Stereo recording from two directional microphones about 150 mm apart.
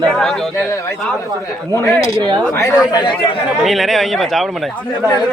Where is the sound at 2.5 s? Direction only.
20° left (ahead or behind).